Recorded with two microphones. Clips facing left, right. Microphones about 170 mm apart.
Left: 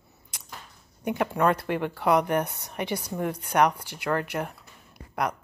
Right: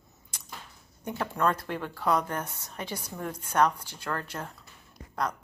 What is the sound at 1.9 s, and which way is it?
Speech, 10° left (ahead or behind).